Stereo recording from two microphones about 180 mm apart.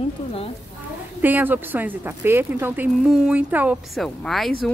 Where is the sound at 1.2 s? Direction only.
10° right (ahead or behind).